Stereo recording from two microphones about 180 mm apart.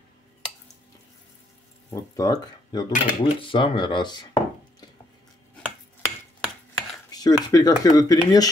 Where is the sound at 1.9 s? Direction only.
20° left (ahead or behind).